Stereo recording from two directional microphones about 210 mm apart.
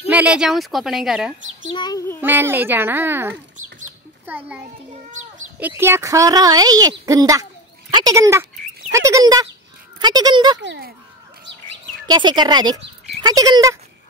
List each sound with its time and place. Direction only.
0.1 s speech: 5° right (ahead or behind)
1.7 s child singing: 20° left (ahead or behind)
2.2 s speech: 10° right (ahead or behind)
10.6 s speech: 55° right (ahead or behind)
12.1 s speech: 20° right (ahead or behind)